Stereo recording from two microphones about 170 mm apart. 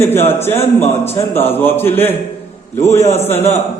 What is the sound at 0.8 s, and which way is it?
Speech, 40° left (ahead or behind).